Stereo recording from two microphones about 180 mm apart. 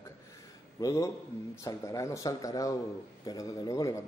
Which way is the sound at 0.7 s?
20° left (ahead or behind).